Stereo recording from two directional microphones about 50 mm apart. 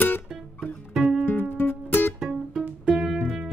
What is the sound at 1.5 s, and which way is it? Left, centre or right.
Music, left.